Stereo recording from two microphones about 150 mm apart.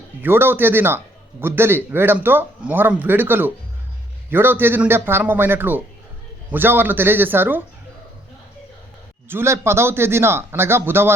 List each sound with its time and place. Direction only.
0.2 s a man's voice: 15° right (ahead or behind)
9.3 s a man's voice: 15° right (ahead or behind)